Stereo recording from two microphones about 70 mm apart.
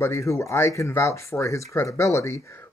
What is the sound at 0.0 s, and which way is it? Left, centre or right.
Speech, left.